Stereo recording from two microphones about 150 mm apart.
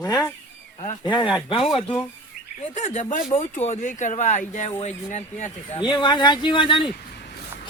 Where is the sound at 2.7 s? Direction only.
50° left (ahead or behind).